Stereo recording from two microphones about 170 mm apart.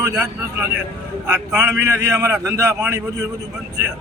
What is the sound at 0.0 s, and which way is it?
A man's voice, 15° right (ahead or behind).